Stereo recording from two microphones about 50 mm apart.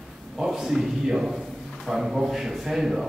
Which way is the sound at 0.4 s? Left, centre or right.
Centre.